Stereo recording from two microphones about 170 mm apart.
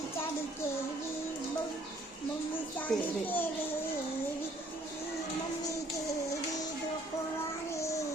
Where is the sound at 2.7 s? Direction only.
10° left (ahead or behind).